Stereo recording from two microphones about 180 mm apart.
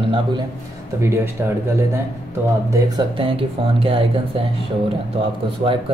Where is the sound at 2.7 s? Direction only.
25° right (ahead or behind).